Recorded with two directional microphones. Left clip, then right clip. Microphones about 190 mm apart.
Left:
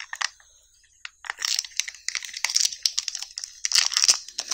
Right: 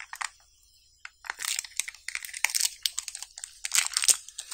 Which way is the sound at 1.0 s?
15° left (ahead or behind).